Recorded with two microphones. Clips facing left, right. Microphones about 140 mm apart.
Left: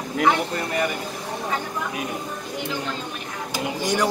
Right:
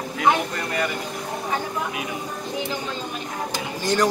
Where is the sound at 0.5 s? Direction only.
20° left (ahead or behind).